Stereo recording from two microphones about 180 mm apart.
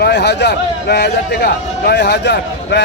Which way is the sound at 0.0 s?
65° left (ahead or behind).